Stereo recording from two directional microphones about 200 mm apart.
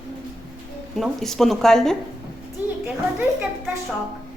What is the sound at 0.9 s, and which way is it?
A woman's voice, centre (ahead or behind).